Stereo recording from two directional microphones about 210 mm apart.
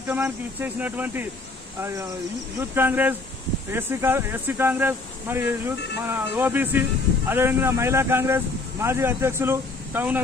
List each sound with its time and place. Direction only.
0.1 s speech: 10° right (ahead or behind)